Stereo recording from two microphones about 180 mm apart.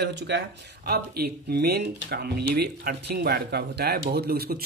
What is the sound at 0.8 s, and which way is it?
Speech, 60° right (ahead or behind).